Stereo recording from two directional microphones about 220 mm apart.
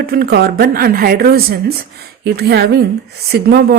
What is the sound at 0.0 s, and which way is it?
A woman's voice, 45° right (ahead or behind).